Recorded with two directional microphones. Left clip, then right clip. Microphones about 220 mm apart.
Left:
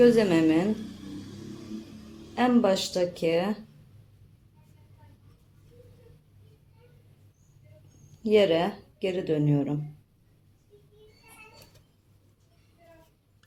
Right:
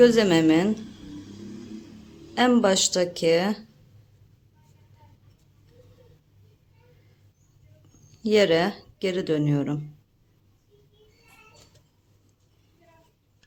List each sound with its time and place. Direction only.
0.0 s speech: 25° right (ahead or behind)
2.3 s speech: 25° right (ahead or behind)
8.2 s speech: 20° right (ahead or behind)